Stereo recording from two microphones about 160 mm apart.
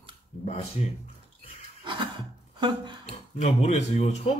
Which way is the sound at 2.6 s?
30° right (ahead or behind).